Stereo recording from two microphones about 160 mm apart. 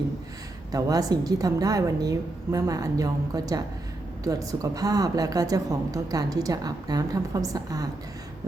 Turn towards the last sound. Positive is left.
turn(degrees=-25)  # may be behind; listen again after turning